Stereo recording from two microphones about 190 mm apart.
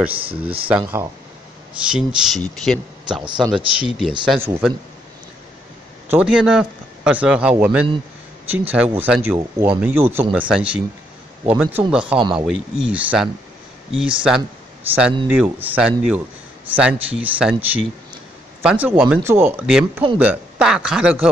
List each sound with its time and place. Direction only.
0.3 s speech: 30° right (ahead or behind)
0.7 s speech: 5° right (ahead or behind)
3.3 s speech: 25° right (ahead or behind)
3.5 s speech: 5° right (ahead or behind)
6.0 s speech: 5° right (ahead or behind)
12.2 s speech: 25° right (ahead or behind)
12.4 s speech: 5° right (ahead or behind)